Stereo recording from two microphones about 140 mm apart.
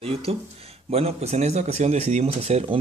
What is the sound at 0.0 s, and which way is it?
Speech, 45° right (ahead or behind).